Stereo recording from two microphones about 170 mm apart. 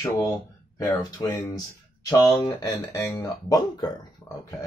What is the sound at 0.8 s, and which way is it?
Speech, 25° left (ahead or behind).